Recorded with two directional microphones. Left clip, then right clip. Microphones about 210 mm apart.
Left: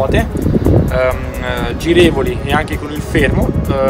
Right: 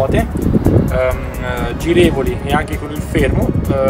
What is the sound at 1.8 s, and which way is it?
Speech, 15° left (ahead or behind).